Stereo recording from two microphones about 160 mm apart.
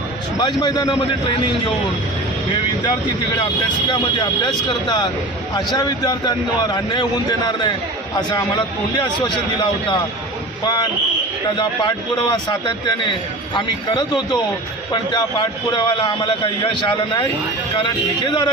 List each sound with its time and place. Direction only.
0.3 s a man's voice: 25° left (ahead or behind)
3.8 s a man's voice: 25° left (ahead or behind)
11.5 s a man's voice: 30° left (ahead or behind)